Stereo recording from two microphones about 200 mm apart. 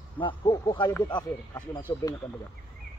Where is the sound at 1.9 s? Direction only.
20° left (ahead or behind).